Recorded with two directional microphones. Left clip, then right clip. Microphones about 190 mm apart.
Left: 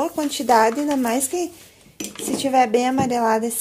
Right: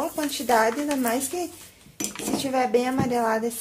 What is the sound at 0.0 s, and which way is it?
A woman's voice, 45° left (ahead or behind).